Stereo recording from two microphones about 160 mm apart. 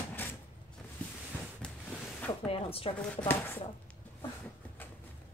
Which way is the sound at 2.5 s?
35° left (ahead or behind).